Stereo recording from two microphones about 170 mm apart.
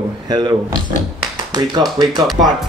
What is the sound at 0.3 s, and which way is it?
Speech, 25° right (ahead or behind).